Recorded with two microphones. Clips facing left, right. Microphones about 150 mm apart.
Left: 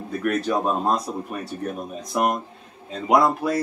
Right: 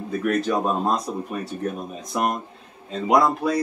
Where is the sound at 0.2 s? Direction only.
Centre (ahead or behind).